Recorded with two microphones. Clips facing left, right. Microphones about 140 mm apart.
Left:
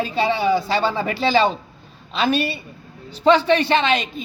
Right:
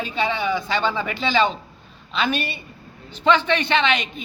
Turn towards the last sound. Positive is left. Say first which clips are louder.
# left 2 dB
turn(degrees=35)  # may be behind; listen again after turning